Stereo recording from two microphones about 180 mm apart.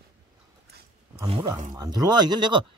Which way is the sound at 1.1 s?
25° right (ahead or behind).